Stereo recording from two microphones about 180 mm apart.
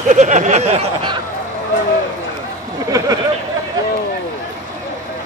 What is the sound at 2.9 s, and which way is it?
Speech, 20° right (ahead or behind).